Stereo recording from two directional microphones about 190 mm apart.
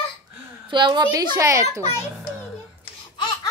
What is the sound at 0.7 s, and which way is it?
Speech, 25° right (ahead or behind).